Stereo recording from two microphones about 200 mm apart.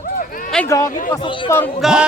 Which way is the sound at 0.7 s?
15° left (ahead or behind).